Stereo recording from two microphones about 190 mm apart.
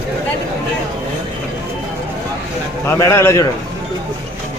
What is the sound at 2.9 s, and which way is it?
Speech, 15° left (ahead or behind).